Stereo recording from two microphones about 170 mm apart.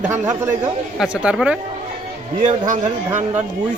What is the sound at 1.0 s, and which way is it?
Speech, 5° right (ahead or behind).